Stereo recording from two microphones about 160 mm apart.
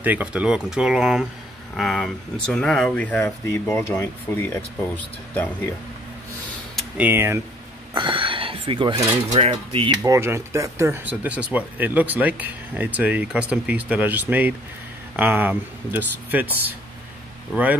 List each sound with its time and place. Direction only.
0.0 s speech: 10° right (ahead or behind); by 5.5 s 10° left (ahead or behind)
7.0 s speech: 15° right (ahead or behind)
7.9 s speech: 30° right (ahead or behind)
9.3 s mechanisms: 45° right (ahead or behind)
10.0 s speech: 20° right (ahead or behind)